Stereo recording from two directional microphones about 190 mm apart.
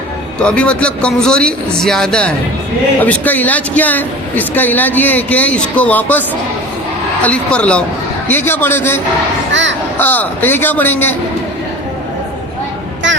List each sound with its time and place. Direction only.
0.3 s a man's voice: 5° left (ahead or behind)
9.5 s a sound: 75° right (ahead or behind)
10.0 s speech: 10° left (ahead or behind)